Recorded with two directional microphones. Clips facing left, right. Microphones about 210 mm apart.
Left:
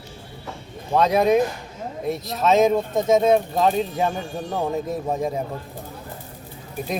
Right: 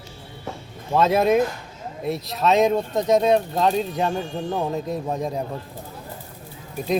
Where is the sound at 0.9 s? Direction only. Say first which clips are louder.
Even; centre (ahead or behind).